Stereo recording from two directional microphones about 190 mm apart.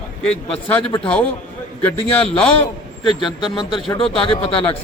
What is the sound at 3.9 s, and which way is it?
Speech, 30° left (ahead or behind).